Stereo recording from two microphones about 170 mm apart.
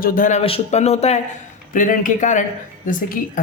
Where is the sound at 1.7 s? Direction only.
50° left (ahead or behind).